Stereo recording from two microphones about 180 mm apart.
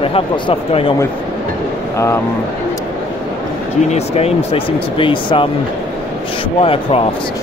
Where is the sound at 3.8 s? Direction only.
35° left (ahead or behind).